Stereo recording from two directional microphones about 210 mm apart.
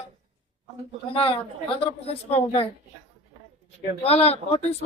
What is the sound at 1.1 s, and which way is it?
Speech, 25° left (ahead or behind).